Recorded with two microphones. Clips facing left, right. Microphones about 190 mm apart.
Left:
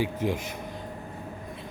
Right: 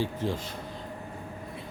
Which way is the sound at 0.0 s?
15° left (ahead or behind).